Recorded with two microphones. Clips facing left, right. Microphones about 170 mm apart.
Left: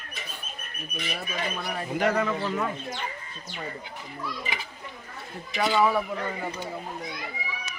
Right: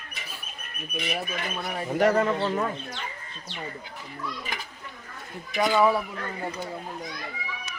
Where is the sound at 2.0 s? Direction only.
40° right (ahead or behind).